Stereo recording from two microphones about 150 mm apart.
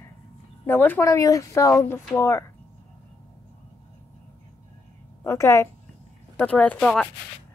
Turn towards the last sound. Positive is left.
turn(degrees=5)  # may be behind; listen again after turning